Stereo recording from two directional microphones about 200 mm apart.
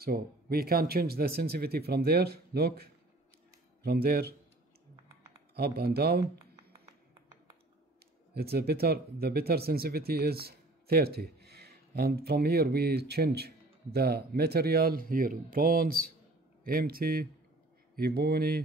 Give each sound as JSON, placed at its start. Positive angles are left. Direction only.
{"t": 0.0, "sound": "speech", "side_deg": -50}
{"t": 5.8, "sound": "speech", "side_deg": -50}
{"t": 8.4, "sound": "speech", "side_deg": -50}